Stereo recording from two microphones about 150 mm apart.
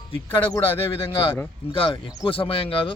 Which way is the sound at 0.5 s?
15° left (ahead or behind).